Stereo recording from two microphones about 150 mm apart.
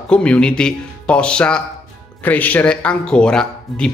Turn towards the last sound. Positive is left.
turn(degrees=5)  # may be behind; listen again after turning